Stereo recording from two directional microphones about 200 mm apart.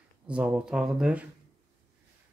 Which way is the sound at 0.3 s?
5° right (ahead or behind).